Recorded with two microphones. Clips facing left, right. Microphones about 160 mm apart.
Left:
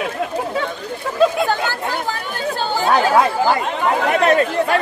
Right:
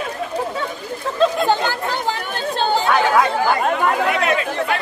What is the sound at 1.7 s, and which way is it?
Chatter, 20° right (ahead or behind).